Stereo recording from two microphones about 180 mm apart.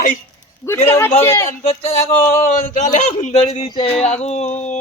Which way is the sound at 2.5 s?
40° left (ahead or behind).